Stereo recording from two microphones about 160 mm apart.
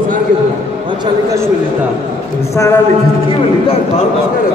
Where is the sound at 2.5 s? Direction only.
20° left (ahead or behind).